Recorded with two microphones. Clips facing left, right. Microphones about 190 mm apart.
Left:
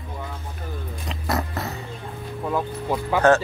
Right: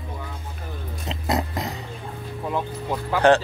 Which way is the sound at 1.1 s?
20° right (ahead or behind).